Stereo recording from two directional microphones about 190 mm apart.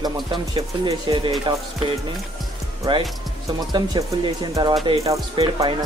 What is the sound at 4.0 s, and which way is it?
Speech, 20° right (ahead or behind).